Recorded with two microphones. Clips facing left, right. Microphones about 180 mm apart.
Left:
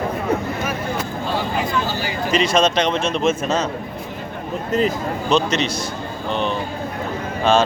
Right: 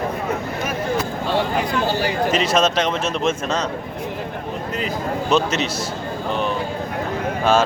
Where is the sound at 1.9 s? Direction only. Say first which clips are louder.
Right 4 dB; 65° right (ahead or behind).